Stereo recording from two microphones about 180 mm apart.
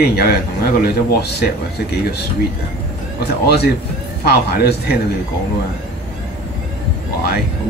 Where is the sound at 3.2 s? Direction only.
65° left (ahead or behind).